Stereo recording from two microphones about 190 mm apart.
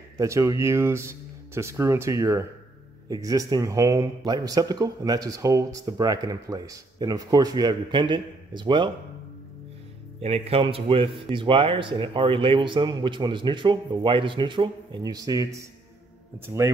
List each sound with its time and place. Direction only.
0.2 s speech: 15° right (ahead or behind)
10.2 s speech: 30° right (ahead or behind); by 16.7 s 15° right (ahead or behind)